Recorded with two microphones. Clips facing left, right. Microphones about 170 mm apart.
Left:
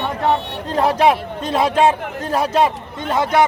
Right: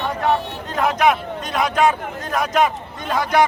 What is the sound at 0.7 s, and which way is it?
A man's voice, 30° left (ahead or behind).